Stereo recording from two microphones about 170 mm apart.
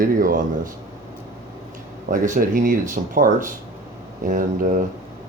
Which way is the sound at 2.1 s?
50° right (ahead or behind).